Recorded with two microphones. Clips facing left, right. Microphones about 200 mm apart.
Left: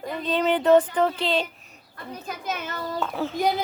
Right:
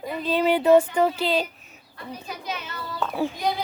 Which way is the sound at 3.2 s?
15° right (ahead or behind).